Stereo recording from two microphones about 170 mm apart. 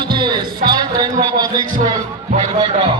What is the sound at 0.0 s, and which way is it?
Music, 25° right (ahead or behind).